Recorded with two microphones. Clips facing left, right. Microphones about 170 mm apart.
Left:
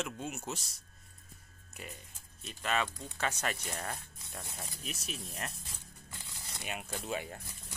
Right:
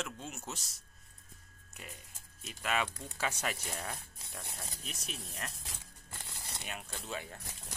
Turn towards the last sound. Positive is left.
turn(degrees=15)  # may be behind; listen again after turning